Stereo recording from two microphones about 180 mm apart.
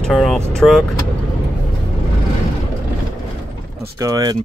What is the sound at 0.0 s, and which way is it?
Speech, centre (ahead or behind).